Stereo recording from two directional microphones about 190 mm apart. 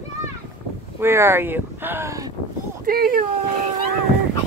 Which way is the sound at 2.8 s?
50° right (ahead or behind).